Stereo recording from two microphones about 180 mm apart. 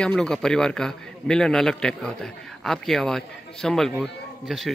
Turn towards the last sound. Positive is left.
turn(degrees=0)  # may be behind; listen again after turning